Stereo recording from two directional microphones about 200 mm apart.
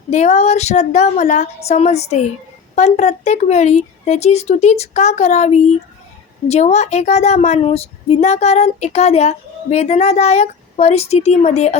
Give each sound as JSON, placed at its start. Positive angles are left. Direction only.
{"t": 0.1, "sound": "a woman's voice", "side_deg": 35}